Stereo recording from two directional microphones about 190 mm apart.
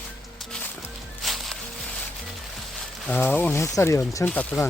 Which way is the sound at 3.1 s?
10° left (ahead or behind).